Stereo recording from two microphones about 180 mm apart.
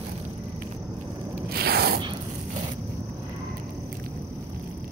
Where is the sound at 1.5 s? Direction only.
60° right (ahead or behind).